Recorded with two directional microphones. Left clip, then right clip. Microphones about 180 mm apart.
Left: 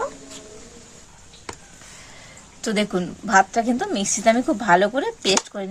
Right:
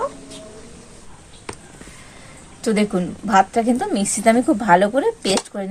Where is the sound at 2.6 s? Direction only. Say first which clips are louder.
Right 3 dB; 10° left (ahead or behind).